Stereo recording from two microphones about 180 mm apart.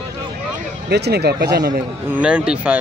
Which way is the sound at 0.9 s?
65° right (ahead or behind).